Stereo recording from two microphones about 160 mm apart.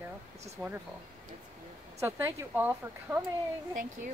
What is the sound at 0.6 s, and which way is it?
Speech, 15° right (ahead or behind).